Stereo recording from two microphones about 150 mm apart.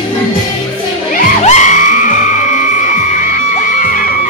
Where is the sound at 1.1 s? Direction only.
50° left (ahead or behind).